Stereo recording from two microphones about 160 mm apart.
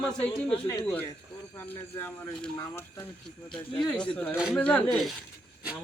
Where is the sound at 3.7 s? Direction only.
5° left (ahead or behind).